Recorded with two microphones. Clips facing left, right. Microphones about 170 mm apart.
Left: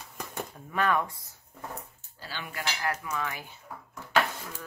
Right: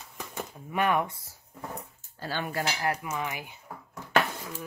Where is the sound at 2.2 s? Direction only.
50° right (ahead or behind).